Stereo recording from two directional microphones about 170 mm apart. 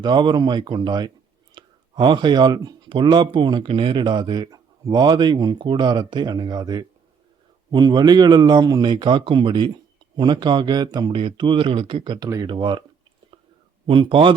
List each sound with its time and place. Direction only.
0.0 s speech: 25° right (ahead or behind)
13.8 s speech: 30° right (ahead or behind)